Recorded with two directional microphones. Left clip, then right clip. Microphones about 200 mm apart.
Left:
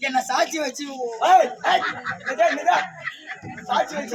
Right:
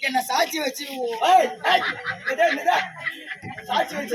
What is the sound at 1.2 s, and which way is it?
Speech, centre (ahead or behind).